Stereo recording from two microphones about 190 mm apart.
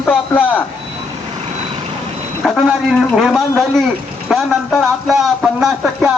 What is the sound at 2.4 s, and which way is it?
A man's voice, centre (ahead or behind).